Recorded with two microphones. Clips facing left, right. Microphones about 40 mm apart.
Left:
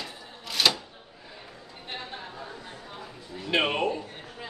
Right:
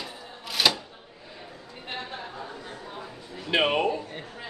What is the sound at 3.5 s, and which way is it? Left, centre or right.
Speech, centre.